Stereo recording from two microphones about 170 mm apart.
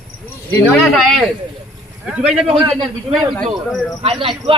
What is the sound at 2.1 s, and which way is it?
Speech, centre (ahead or behind).